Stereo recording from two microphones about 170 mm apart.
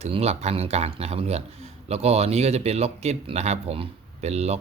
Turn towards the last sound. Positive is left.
turn(degrees=-40)  # may be behind; listen again after turning